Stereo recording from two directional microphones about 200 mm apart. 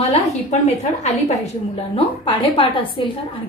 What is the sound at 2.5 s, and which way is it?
Speech, 25° left (ahead or behind).